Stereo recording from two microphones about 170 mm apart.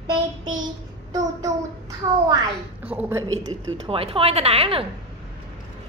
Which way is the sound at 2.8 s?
10° right (ahead or behind).